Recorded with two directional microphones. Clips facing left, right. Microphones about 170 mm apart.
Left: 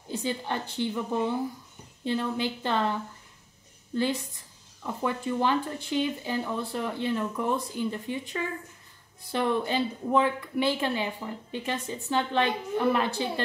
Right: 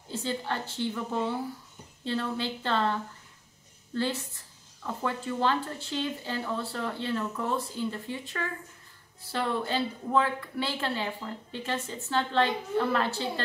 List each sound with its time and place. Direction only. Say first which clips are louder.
0.1 s a woman's voice: left 2 dB; 15° left (ahead or behind)